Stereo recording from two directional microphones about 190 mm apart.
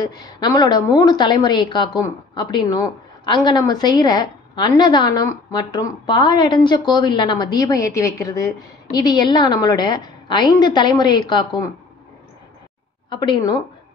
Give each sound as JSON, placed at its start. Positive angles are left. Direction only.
{"t": 0.0, "sound": "a woman's voice", "side_deg": 20}
{"t": 13.1, "sound": "a woman's voice", "side_deg": 25}